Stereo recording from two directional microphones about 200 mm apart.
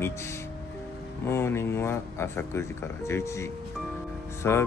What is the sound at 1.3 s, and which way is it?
Speech, 10° left (ahead or behind).